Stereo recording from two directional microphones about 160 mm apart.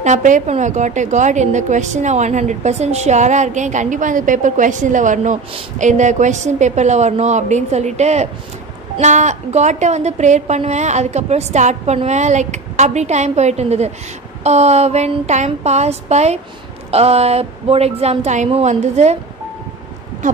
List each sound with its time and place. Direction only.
0.0 s a woman's voice: 50° right (ahead or behind)